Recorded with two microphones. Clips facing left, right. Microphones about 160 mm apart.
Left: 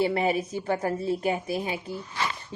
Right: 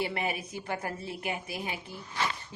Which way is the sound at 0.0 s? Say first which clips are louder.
Left 8 dB; 30° left (ahead or behind).